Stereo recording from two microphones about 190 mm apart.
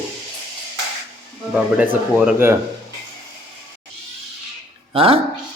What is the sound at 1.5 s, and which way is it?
Speech, 5° right (ahead or behind).